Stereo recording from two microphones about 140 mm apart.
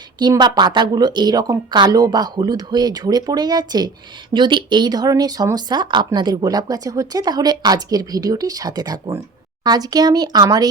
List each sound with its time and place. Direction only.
0.2 s speech: 30° right (ahead or behind)